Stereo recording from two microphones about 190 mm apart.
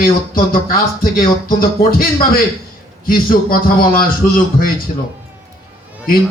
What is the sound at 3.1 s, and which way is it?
Speech, 50° left (ahead or behind).